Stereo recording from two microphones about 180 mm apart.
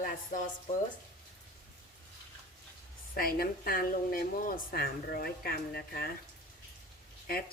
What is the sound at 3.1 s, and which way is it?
Speech, 55° left (ahead or behind).